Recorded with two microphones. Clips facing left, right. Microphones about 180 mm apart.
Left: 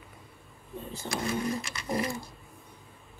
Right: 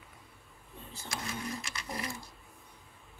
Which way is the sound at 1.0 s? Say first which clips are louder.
Left 9 dB; 60° left (ahead or behind).